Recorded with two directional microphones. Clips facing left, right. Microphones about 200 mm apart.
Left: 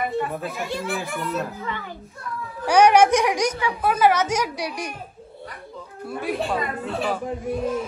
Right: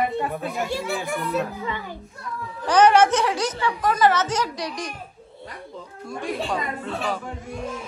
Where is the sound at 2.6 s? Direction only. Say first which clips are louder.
Left 1 dB; 10° left (ahead or behind).